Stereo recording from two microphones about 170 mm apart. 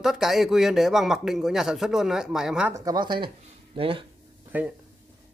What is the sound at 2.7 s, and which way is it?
A woman's voice, 20° right (ahead or behind).